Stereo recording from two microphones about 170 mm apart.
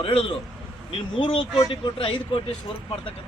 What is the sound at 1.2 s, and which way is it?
Speech, 30° left (ahead or behind).